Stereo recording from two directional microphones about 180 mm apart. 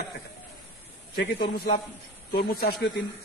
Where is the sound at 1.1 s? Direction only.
60° left (ahead or behind).